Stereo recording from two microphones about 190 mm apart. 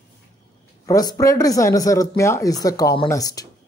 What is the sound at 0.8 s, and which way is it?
Speech, 20° left (ahead or behind).